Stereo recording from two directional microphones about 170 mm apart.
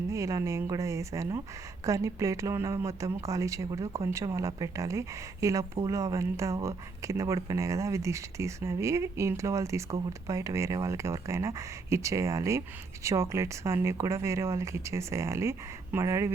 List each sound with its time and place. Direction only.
0.1 s speech: 20° right (ahead or behind)